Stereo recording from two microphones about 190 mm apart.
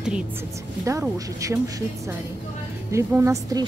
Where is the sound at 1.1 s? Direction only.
15° right (ahead or behind).